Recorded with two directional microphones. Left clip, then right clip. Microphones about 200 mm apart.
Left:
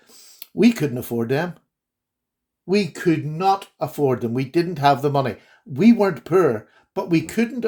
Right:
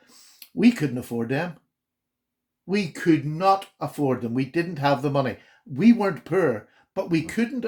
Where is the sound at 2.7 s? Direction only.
35° left (ahead or behind).